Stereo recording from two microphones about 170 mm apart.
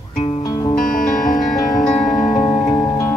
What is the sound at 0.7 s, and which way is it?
Music, 55° left (ahead or behind).